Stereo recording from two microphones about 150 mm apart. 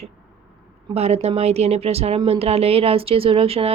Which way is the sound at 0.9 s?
45° right (ahead or behind).